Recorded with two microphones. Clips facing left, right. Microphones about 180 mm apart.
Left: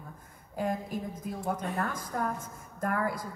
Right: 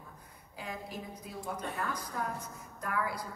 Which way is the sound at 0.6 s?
50° left (ahead or behind).